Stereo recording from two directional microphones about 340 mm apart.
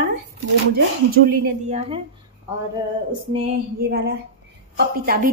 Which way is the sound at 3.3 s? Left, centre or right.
Right.